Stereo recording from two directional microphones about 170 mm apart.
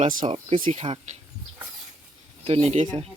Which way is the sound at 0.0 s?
50° right (ahead or behind).